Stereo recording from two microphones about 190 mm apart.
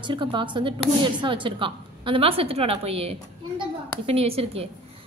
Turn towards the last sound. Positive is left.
turn(degrees=-30)  # may be behind; listen again after turning